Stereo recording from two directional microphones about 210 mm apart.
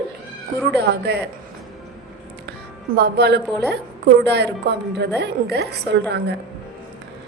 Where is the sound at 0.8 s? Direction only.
50° right (ahead or behind).